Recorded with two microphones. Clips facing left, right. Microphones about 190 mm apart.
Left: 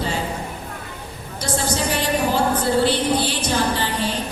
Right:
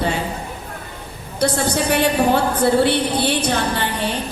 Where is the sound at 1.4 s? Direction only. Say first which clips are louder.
Right 4 dB; 60° right (ahead or behind).